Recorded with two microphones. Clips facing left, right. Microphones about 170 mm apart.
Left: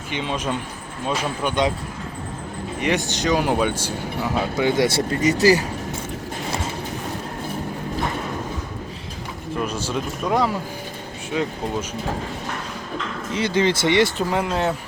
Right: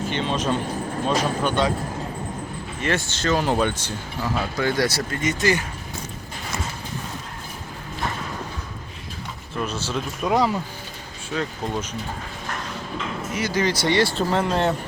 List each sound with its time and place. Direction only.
0.1 s speech: 10° left (ahead or behind)
2.8 s speech: 15° left (ahead or behind)
4.4 s speech: 20° left (ahead or behind)
5.2 s speech: 35° left (ahead or behind)
9.6 s speech: 10° left (ahead or behind)
10.2 s speech: centre (ahead or behind)
11.3 s speech: 15° left (ahead or behind)
13.3 s speech: 25° left (ahead or behind); by 14.8 s 5° left (ahead or behind)